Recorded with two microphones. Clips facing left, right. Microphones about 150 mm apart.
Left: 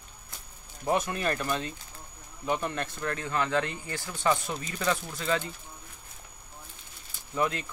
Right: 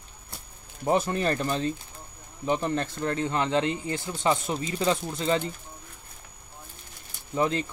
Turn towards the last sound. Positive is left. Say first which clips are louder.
# right 4 dB
turn(degrees=-30)  # may be behind; listen again after turning